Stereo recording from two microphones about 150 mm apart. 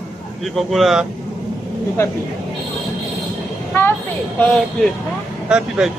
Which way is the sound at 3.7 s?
15° left (ahead or behind).